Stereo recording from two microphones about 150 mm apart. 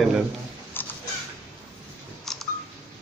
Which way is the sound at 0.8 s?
15° left (ahead or behind).